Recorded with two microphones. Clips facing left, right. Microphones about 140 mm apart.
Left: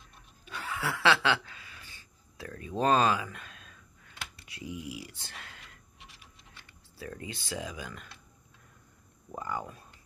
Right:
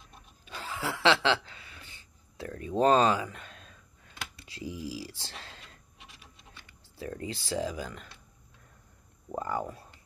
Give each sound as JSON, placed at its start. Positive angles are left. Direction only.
{"t": 0.5, "sound": "a sound", "side_deg": -25}
{"t": 7.0, "sound": "speech", "side_deg": -30}
{"t": 9.5, "sound": "speech", "side_deg": -30}